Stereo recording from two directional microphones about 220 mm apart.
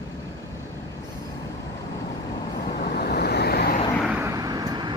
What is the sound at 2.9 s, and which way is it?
Vehicle, 45° left (ahead or behind).